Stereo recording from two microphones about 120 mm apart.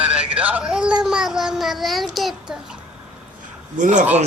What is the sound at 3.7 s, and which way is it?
Speech, 90° right.